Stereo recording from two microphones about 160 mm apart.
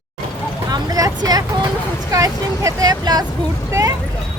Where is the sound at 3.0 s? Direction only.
25° right (ahead or behind).